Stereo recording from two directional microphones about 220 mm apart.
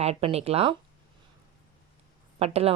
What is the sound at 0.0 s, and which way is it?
Speech, 25° right (ahead or behind).